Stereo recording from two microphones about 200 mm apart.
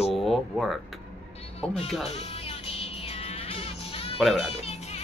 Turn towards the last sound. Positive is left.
turn(degrees=30)  # may be behind; listen again after turning